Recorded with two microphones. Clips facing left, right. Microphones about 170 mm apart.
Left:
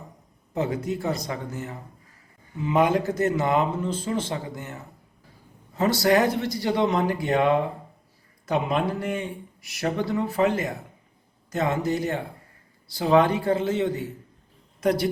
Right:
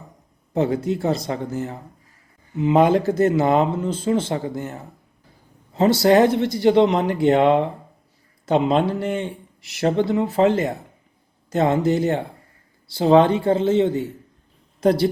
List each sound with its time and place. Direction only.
0.5 s speech: 30° right (ahead or behind)